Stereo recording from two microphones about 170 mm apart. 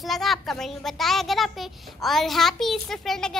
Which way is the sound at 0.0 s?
Centre (ahead or behind).